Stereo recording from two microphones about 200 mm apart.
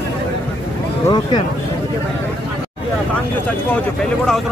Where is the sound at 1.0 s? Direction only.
20° left (ahead or behind).